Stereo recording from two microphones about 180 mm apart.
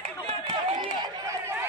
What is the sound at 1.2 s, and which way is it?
Run, 15° right (ahead or behind).